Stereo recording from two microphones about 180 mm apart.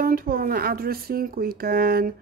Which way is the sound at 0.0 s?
55° right (ahead or behind).